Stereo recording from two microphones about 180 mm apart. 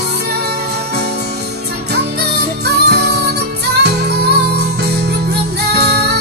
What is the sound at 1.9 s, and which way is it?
Music, 65° right (ahead or behind).